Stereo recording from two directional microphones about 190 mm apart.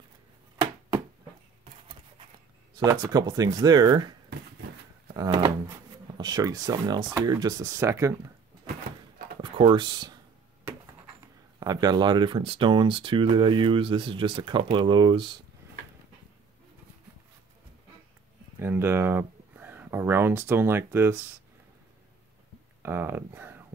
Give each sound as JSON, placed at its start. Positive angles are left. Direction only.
{"t": 2.8, "sound": "speech", "side_deg": -20}
{"t": 5.1, "sound": "speech", "side_deg": -25}
{"t": 9.4, "sound": "speech", "side_deg": -25}
{"t": 11.6, "sound": "speech", "side_deg": -20}
{"t": 18.6, "sound": "a sound", "side_deg": -10}
{"t": 22.8, "sound": "speech", "side_deg": -10}